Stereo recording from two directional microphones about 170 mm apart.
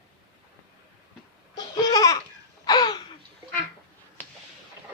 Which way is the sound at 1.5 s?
20° left (ahead or behind).